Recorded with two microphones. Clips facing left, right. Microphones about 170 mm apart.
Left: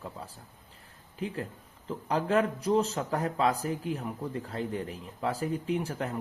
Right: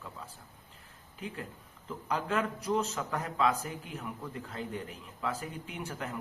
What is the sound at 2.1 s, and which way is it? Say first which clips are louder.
Speech: left 5 dB; 35° left (ahead or behind).